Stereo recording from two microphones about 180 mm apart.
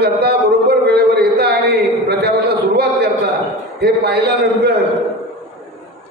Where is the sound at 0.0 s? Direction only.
65° right (ahead or behind).